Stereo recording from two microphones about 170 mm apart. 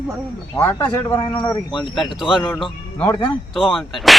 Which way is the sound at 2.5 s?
5° left (ahead or behind).